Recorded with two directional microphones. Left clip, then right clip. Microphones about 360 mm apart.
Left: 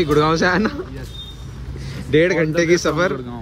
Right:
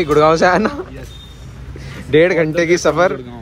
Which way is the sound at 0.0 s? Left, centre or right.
Centre.